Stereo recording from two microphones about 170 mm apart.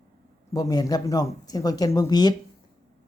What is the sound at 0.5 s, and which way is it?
Speech, 20° left (ahead or behind).